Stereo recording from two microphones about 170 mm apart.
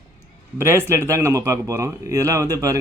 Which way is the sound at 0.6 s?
15° right (ahead or behind).